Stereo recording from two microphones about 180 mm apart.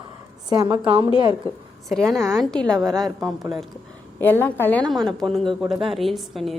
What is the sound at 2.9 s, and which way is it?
Speech, centre (ahead or behind).